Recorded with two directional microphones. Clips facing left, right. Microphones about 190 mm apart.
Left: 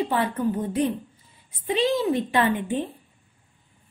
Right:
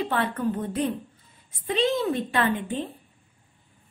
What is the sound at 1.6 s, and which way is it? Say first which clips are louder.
A woman's voice: left 2 dB; 20° left (ahead or behind).